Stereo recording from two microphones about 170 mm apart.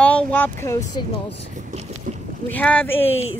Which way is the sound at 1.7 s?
40° right (ahead or behind).